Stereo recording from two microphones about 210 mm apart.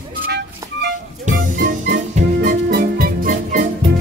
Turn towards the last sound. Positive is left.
turn(degrees=-40)  # may be behind; listen again after turning